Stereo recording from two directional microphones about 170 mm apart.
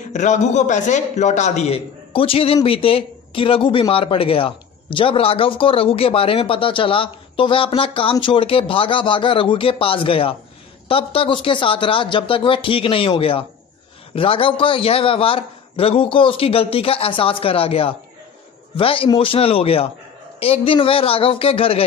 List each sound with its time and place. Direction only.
0.1 s a man's voice: 45° left (ahead or behind)